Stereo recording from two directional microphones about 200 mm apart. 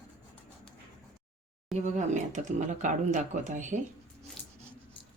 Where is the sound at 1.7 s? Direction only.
35° right (ahead or behind).